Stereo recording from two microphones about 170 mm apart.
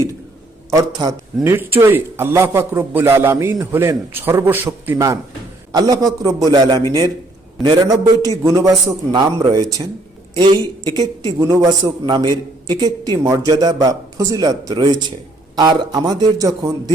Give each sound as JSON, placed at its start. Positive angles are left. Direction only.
{"t": 0.7, "sound": "a man's voice", "side_deg": -20}